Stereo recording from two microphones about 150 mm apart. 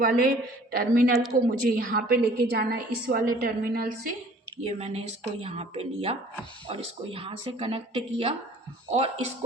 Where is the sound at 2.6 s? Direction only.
85° right.